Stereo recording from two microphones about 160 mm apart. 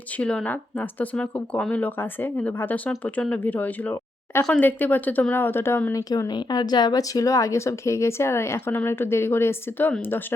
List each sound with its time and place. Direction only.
0.2 s speech: 5° left (ahead or behind)